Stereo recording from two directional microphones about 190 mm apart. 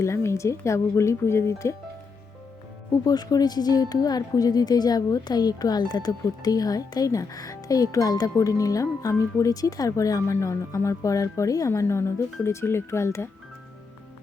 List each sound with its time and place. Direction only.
0.0 s speech: 15° left (ahead or behind)
3.0 s speech: 20° left (ahead or behind)